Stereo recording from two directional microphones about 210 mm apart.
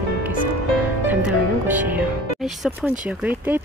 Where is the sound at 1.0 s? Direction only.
10° right (ahead or behind).